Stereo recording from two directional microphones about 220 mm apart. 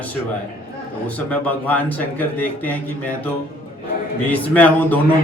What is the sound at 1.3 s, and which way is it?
A man's voice, 5° left (ahead or behind).